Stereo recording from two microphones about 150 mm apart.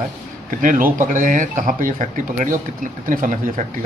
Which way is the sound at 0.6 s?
65° right (ahead or behind).